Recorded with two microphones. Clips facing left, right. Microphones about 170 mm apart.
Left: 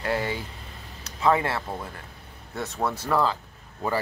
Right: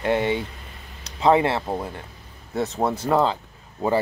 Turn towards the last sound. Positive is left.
turn(degrees=-25)  # may be behind; listen again after turning